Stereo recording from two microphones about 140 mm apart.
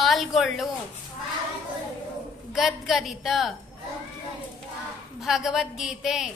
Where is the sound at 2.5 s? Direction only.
Centre (ahead or behind).